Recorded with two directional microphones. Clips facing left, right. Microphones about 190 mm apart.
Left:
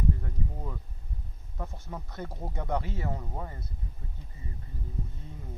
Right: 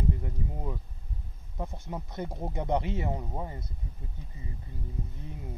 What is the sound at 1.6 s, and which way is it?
Speech, 20° right (ahead or behind).